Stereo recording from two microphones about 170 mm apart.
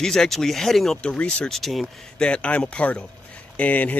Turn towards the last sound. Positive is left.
turn(degrees=10)  # may be behind; listen again after turning